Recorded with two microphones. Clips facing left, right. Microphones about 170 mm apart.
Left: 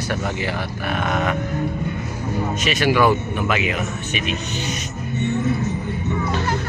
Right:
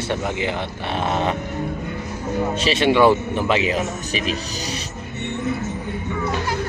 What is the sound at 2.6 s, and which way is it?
A man's voice, 25° right (ahead or behind).